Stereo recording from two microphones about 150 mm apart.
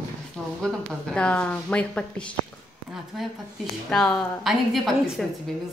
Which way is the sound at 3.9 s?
5° left (ahead or behind).